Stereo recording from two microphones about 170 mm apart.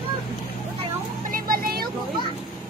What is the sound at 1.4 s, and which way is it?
Vehicle, 60° right (ahead or behind).